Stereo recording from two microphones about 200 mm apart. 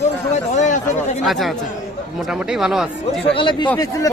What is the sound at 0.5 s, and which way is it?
Speech, 40° left (ahead or behind).